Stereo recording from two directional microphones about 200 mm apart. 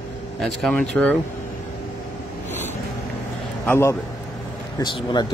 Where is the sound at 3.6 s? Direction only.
10° left (ahead or behind).